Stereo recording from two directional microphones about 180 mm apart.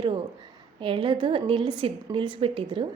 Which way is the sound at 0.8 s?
30° right (ahead or behind).